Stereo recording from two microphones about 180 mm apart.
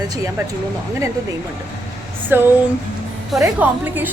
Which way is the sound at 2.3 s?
10° right (ahead or behind).